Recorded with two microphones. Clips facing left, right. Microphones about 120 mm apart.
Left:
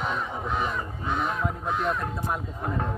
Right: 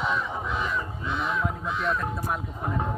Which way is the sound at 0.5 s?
45° left (ahead or behind).